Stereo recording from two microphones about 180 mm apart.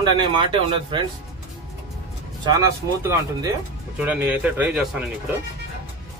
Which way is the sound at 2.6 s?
20° right (ahead or behind).